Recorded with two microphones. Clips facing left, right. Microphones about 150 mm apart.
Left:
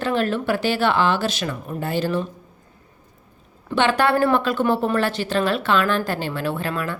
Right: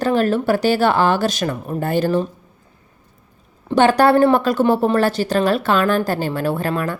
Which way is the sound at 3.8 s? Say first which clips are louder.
Right 6 dB; 40° right (ahead or behind).